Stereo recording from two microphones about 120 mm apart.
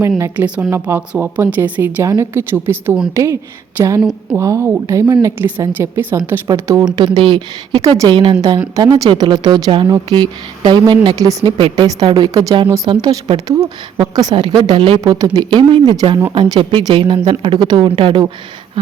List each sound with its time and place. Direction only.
0.3 s a woman's voice: 10° right (ahead or behind)
0.7 s a woman's voice: 20° right (ahead or behind)
4.4 s a woman's voice: 25° right (ahead or behind)
6.5 s a woman's voice: 30° right (ahead or behind)
6.9 s a woman's voice: 40° right (ahead or behind)
11.5 s a woman's voice: 45° right (ahead or behind)
12.0 s a woman's voice: 35° right (ahead or behind)
12.9 s a woman's voice: 40° right (ahead or behind)
15.0 s a woman's voice: 30° right (ahead or behind)